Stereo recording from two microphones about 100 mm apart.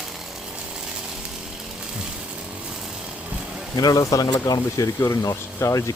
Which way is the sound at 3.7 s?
40° left (ahead or behind).